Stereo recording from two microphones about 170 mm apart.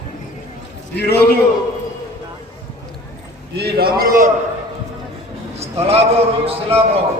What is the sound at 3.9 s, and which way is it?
Speech, 60° right (ahead or behind).